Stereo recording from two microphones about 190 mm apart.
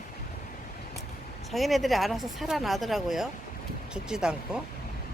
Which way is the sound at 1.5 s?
Centre (ahead or behind).